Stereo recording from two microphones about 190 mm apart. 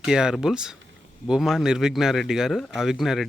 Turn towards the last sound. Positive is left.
turn(degrees=0)  # may be behind; listen again after turning